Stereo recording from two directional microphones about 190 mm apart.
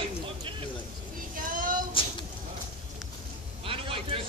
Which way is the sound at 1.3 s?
45° right (ahead or behind).